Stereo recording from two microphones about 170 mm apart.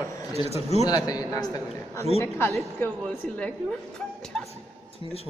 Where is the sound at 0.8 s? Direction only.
20° left (ahead or behind).